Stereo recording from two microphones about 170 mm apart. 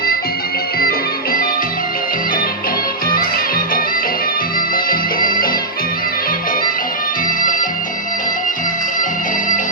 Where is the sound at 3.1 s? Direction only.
60° left (ahead or behind).